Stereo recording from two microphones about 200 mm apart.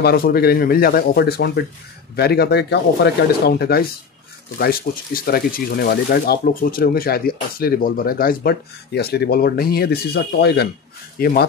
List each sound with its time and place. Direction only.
0.0 s speech: 50° left (ahead or behind)